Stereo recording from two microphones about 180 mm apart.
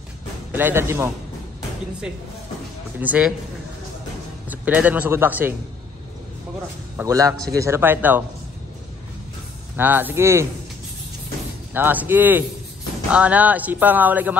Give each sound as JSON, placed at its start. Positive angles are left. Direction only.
{"t": 0.5, "sound": "speech", "side_deg": -10}
{"t": 3.0, "sound": "speech", "side_deg": -5}
{"t": 4.5, "sound": "speech", "side_deg": -10}
{"t": 7.0, "sound": "speech", "side_deg": -20}
{"t": 9.8, "sound": "speech", "side_deg": -10}
{"t": 11.7, "sound": "speech", "side_deg": -10}